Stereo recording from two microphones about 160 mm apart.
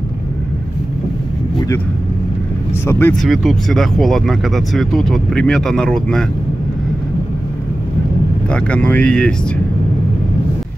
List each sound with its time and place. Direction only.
2.9 s speech: 15° left (ahead or behind)
3.2 s speech: centre (ahead or behind)
8.5 s speech: 5° left (ahead or behind)